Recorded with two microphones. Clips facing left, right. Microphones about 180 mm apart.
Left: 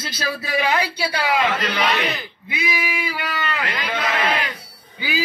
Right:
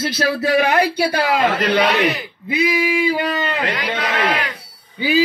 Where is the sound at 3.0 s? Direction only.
25° right (ahead or behind).